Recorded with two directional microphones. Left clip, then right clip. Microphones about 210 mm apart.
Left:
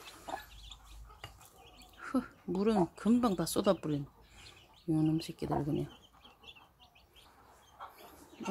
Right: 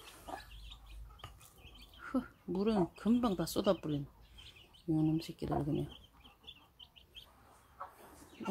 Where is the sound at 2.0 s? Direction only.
15° left (ahead or behind).